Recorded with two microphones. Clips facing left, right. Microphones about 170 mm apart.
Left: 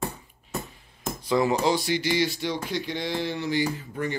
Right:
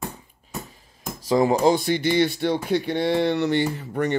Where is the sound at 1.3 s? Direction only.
40° right (ahead or behind).